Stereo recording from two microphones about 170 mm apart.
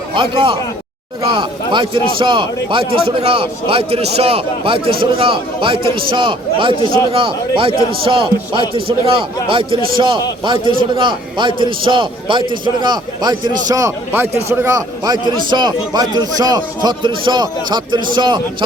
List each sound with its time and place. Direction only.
0.1 s a man's voice: 30° right (ahead or behind)